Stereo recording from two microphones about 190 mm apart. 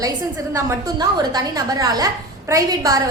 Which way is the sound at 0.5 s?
20° right (ahead or behind).